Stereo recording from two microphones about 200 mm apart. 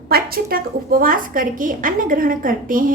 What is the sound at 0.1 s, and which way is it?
A woman's voice, 45° right (ahead or behind).